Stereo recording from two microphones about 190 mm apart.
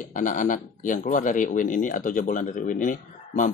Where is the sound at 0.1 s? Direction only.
45° left (ahead or behind).